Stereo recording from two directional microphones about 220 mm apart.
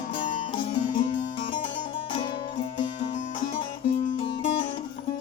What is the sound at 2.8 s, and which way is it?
Music, 35° left (ahead or behind).